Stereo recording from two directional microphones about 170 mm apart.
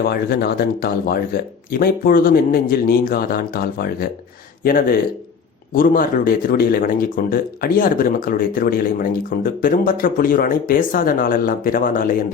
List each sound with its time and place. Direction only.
0.1 s speech: 65° left (ahead or behind)